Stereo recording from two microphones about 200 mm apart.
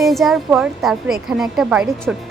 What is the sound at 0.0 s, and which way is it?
Speech, centre (ahead or behind).